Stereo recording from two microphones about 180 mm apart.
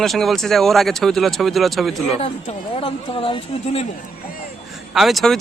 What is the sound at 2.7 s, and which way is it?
Speech, 30° left (ahead or behind).